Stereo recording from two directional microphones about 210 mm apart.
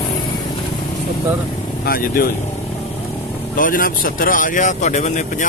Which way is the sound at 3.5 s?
40° left (ahead or behind).